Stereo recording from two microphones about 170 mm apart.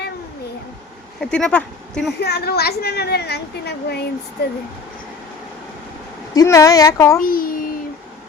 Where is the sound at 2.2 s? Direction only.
70° left (ahead or behind).